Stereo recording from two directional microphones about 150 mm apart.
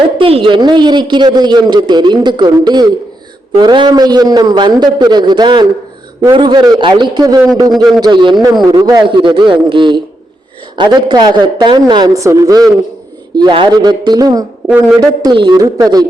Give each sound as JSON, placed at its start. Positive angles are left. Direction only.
{"t": 0.2, "sound": "a man's voice", "side_deg": -35}